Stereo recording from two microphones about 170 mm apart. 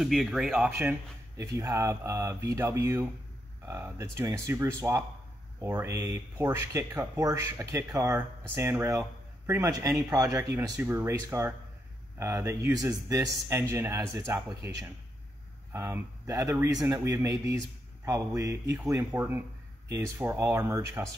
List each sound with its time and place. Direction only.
0.0 s speech: centre (ahead or behind); by 21.1 s 15° right (ahead or behind)